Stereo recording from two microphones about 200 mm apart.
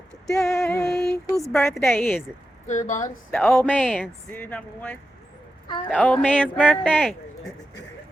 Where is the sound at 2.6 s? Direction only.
35° left (ahead or behind).